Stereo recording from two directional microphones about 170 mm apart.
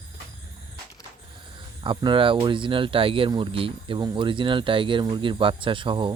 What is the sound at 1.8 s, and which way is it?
Speech, 30° right (ahead or behind).